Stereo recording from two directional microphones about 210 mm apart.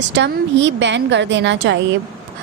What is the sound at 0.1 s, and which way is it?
A woman's voice, 55° right (ahead or behind).